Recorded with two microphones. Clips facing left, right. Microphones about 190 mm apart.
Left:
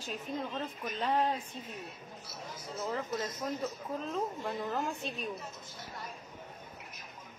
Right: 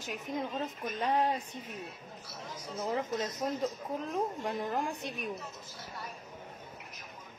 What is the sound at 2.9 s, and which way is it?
Speech, 20° right (ahead or behind).